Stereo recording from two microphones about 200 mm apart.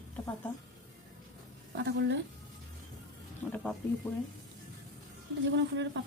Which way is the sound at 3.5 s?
5° left (ahead or behind).